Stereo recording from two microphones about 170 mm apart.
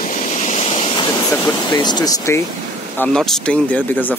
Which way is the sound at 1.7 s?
25° left (ahead or behind).